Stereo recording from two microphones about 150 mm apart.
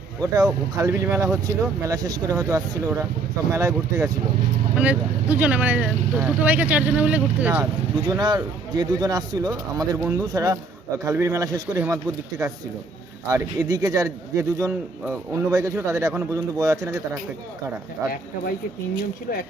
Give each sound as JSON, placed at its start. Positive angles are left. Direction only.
{"t": 0.2, "sound": "speech", "side_deg": -25}
{"t": 4.7, "sound": "speech", "side_deg": -10}
{"t": 7.6, "sound": "speech", "side_deg": -25}
{"t": 13.2, "sound": "speech", "side_deg": -25}
{"t": 18.0, "sound": "speech", "side_deg": -20}